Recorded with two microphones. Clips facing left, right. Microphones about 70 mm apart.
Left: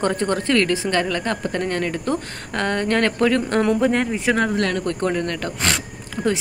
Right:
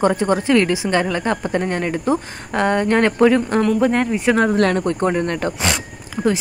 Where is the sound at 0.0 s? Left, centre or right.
Centre.